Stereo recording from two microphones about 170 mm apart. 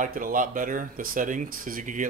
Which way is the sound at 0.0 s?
50° right (ahead or behind).